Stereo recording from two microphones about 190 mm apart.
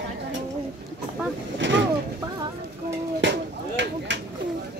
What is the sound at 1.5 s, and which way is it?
Vehicle, 70° right (ahead or behind).